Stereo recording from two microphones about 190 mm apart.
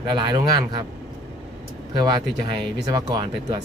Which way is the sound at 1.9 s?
25° right (ahead or behind).